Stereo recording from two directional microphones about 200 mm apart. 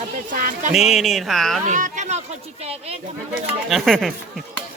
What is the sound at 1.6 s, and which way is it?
Speech, 40° right (ahead or behind).